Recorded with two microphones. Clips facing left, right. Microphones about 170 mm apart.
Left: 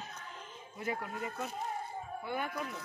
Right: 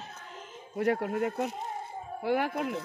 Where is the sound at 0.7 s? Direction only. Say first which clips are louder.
Right 11 dB; 70° right (ahead or behind).